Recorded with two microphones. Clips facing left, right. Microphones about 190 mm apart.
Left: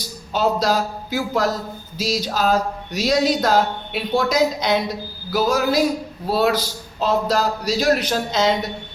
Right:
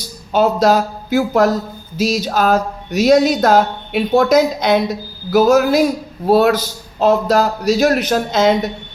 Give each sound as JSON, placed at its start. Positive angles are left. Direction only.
{"t": 0.3, "sound": "speech", "side_deg": -55}